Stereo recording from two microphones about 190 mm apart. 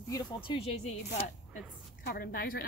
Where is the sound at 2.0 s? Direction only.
50° left (ahead or behind).